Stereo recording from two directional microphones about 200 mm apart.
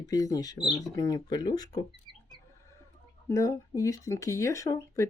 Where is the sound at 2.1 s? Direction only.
25° right (ahead or behind).